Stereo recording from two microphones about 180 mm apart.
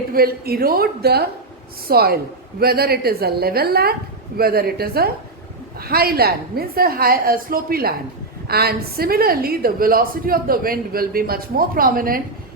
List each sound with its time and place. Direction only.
0.1 s a woman's voice: 55° right (ahead or behind)